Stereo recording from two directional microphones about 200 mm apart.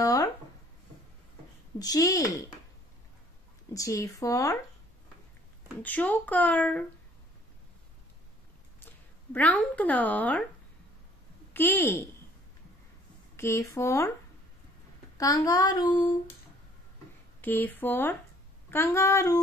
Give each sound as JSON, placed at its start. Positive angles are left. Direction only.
{"t": 0.0, "sound": "a sound", "side_deg": 15}
{"t": 1.8, "sound": "speech", "side_deg": 15}
{"t": 3.7, "sound": "speech", "side_deg": 15}
{"t": 5.8, "sound": "speech", "side_deg": 5}
{"t": 9.3, "sound": "speech", "side_deg": 5}
{"t": 11.5, "sound": "speech", "side_deg": 10}
{"t": 13.4, "sound": "speech", "side_deg": 15}
{"t": 15.1, "sound": "speech", "side_deg": 15}
{"t": 17.4, "sound": "speech", "side_deg": 10}